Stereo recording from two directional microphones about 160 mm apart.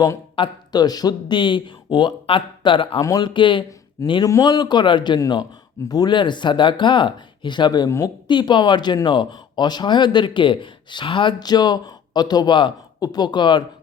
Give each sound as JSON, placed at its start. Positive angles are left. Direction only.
{"t": 0.3, "sound": "speech", "side_deg": 30}